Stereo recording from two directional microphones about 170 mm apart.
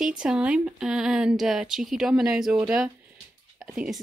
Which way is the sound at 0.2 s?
5° right (ahead or behind).